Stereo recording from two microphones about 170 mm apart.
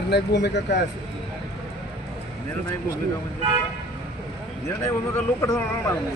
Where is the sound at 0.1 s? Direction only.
90° left.